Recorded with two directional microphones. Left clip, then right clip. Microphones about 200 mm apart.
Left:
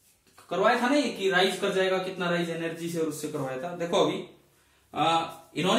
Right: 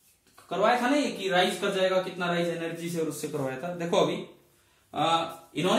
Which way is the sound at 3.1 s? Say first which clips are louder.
Even; 35° right (ahead or behind).